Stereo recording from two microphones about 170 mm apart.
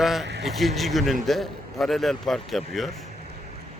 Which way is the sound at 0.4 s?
Centre (ahead or behind).